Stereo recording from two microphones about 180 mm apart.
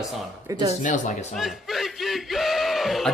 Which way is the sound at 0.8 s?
45° left (ahead or behind).